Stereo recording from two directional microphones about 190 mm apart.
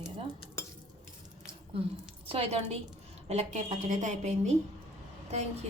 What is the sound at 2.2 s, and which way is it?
A woman's voice, 30° right (ahead or behind).